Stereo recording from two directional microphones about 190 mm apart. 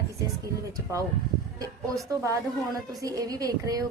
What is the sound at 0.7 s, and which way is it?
A woman's voice, 15° right (ahead or behind).